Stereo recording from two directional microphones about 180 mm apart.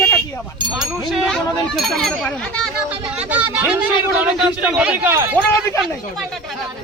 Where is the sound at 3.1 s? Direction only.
10° right (ahead or behind).